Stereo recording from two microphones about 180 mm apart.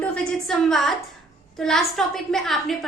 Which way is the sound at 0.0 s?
5° left (ahead or behind).